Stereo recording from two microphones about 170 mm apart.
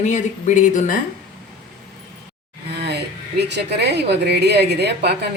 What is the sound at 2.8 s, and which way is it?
Speech, 75° right (ahead or behind).